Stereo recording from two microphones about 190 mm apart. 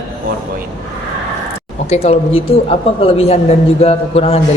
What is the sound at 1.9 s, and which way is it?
Speech, 35° left (ahead or behind).